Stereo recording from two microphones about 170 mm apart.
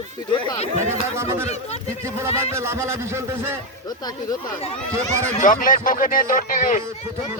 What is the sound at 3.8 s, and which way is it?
Speech, 20° left (ahead or behind).